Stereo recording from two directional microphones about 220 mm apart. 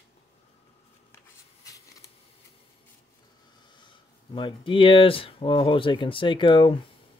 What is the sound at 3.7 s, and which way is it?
Speech, 20° left (ahead or behind).